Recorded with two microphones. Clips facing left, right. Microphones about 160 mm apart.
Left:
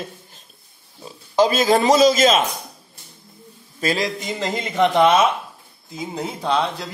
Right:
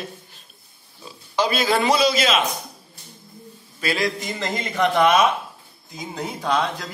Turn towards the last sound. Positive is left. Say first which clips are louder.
# left 1 dB
turn(degrees=30)  # may be behind; listen again after turning